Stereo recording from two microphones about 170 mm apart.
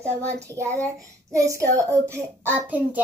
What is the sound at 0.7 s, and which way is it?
Child singing, 20° right (ahead or behind).